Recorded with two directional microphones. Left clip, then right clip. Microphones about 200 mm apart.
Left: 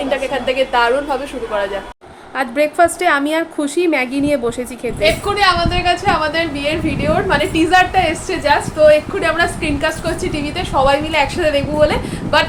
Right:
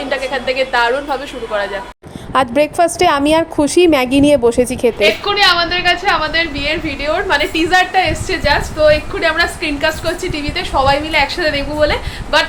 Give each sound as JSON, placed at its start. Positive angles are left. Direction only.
{"t": 0.1, "sound": "a woman's voice", "side_deg": 0}
{"t": 2.3, "sound": "a woman's voice", "side_deg": -30}
{"t": 4.9, "sound": "a woman's voice", "side_deg": 5}